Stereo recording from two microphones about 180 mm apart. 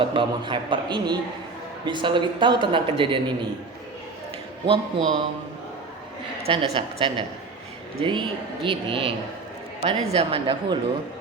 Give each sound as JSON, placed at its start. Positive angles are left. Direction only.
{"t": 0.0, "sound": "a man's voice", "side_deg": -25}
{"t": 4.6, "sound": "a man's voice", "side_deg": -30}
{"t": 6.4, "sound": "a man's voice", "side_deg": -30}